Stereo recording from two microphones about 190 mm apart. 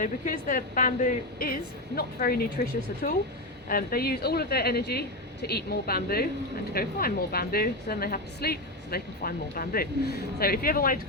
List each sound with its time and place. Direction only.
0.0 s a woman's voice: 45° left (ahead or behind)
3.7 s a woman's voice: 50° left (ahead or behind)